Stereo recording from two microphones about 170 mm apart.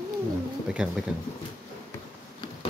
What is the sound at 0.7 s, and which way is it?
Speech, 5° right (ahead or behind).